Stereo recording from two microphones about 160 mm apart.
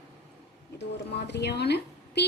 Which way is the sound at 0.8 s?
90° left.